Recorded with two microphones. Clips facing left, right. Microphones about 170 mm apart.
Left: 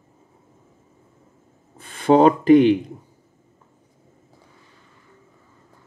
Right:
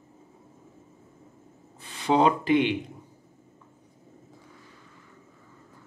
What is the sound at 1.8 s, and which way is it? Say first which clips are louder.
Speech: left 8 dB; 50° left (ahead or behind).